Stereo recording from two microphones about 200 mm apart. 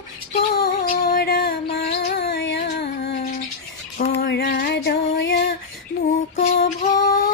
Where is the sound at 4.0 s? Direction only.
60° left (ahead or behind).